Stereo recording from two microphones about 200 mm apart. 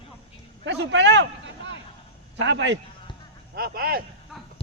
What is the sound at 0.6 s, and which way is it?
A man's voice, 60° right (ahead or behind).